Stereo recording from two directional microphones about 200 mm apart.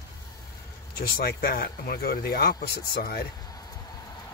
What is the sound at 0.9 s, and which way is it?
Speech, 50° left (ahead or behind).